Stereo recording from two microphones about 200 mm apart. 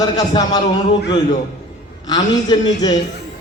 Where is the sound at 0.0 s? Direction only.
20° left (ahead or behind).